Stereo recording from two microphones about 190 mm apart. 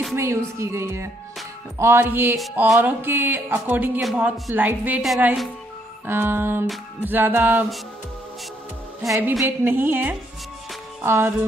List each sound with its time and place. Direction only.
0.1 s speech: 15° right (ahead or behind)
2.3 s music: centre (ahead or behind)
2.7 s speech: 10° right (ahead or behind)
6.0 s speech: 10° right (ahead or behind)
9.0 s speech: 15° right (ahead or behind)
11.0 s music: 15° right (ahead or behind)